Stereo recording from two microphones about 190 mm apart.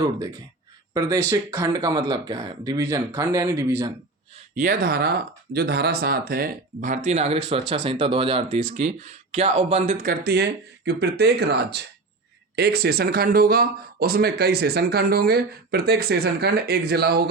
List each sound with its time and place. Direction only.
0.9 s speech: 20° right (ahead or behind)
4.5 s speech: 50° right (ahead or behind)
10.1 s speech: 55° right (ahead or behind)